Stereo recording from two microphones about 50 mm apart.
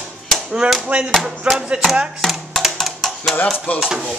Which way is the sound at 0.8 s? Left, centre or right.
Right.